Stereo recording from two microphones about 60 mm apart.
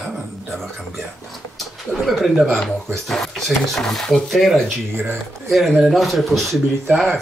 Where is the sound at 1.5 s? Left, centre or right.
Centre.